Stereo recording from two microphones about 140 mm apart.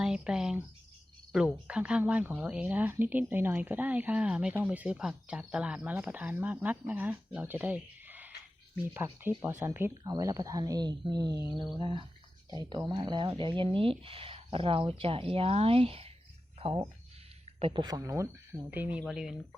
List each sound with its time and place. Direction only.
0.0 s speech: 5° right (ahead or behind)